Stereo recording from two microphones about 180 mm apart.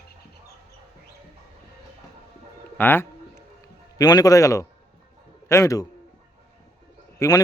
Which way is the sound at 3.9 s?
20° left (ahead or behind).